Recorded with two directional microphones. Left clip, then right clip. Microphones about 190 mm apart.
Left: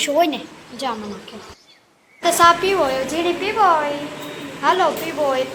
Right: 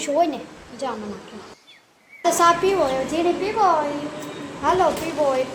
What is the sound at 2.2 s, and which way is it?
Speech, 5° right (ahead or behind).